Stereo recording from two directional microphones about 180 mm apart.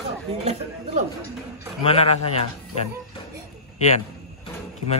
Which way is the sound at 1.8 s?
35° left (ahead or behind).